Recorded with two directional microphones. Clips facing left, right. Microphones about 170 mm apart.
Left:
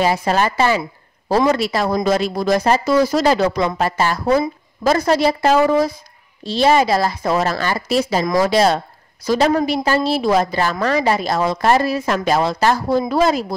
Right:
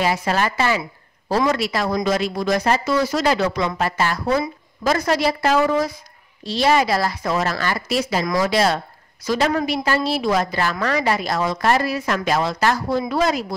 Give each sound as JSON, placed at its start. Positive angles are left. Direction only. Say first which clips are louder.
{"t": 0.0, "sound": "a woman's voice", "louder": "left 3 dB", "side_deg": 30}